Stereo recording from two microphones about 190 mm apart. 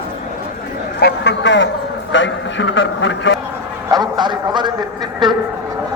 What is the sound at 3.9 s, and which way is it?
Speech, 20° right (ahead or behind).